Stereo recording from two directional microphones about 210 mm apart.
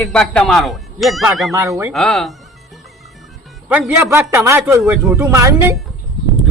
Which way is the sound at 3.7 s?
10° right (ahead or behind).